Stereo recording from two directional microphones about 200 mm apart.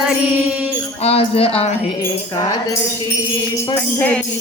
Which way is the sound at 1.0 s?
30° left (ahead or behind).